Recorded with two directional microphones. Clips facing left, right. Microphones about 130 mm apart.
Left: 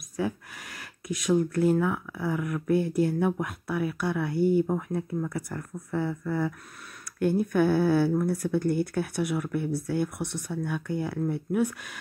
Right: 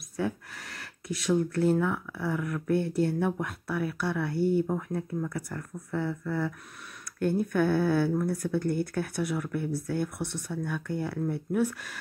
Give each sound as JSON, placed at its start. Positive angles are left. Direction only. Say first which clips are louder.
{"t": 0.2, "sound": "speech", "louder": "left 1 dB", "side_deg": 5}
{"t": 8.7, "sound": "speech", "louder": "left 2 dB", "side_deg": 10}